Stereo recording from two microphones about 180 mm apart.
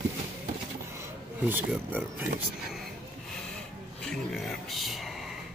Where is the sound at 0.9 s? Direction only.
10° right (ahead or behind).